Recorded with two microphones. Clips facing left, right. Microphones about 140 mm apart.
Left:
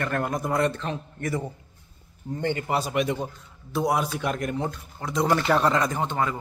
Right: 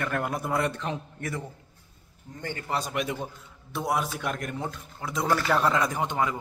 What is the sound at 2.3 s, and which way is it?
Speech, 30° left (ahead or behind).